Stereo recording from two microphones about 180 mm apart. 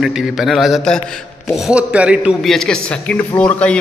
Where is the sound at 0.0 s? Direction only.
Centre (ahead or behind).